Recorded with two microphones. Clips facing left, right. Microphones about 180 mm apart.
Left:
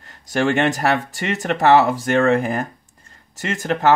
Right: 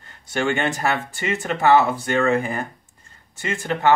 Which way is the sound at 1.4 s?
40° left (ahead or behind).